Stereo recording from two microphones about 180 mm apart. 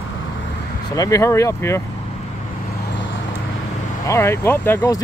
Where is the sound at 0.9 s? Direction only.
20° left (ahead or behind).